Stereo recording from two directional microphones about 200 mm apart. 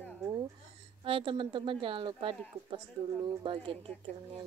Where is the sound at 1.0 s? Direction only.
25° right (ahead or behind).